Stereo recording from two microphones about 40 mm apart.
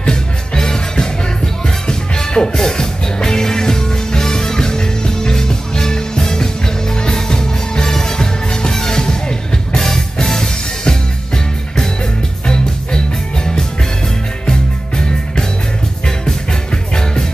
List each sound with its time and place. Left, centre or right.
0.0 s music: centre
14.4 s music: centre